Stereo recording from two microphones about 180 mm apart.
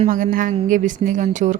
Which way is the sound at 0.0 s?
45° right (ahead or behind).